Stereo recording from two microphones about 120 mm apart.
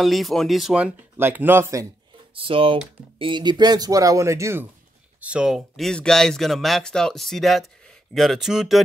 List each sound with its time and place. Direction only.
0.0 s speech: centre (ahead or behind); by 1.9 s 25° right (ahead or behind)
2.3 s speech: 45° right (ahead or behind); by 4.6 s 25° right (ahead or behind)
5.2 s speech: 10° right (ahead or behind)